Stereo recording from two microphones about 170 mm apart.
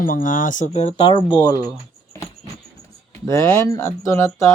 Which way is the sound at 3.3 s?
15° left (ahead or behind).